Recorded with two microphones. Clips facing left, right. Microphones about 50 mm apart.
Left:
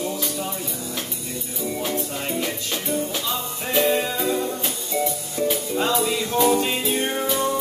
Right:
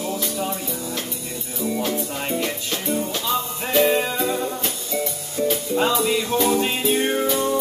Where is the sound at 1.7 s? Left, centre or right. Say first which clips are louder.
Right 3 dB; centre.